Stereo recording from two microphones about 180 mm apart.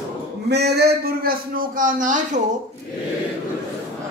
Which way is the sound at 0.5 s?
65° right (ahead or behind).